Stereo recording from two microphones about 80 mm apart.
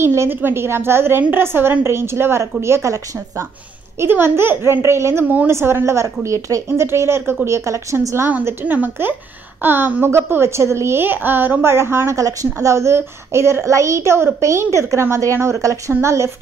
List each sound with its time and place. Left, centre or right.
0.0 s a woman's voice: right
8.5 s a woman's voice: right